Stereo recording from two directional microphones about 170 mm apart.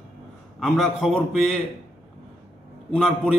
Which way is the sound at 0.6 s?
Centre (ahead or behind).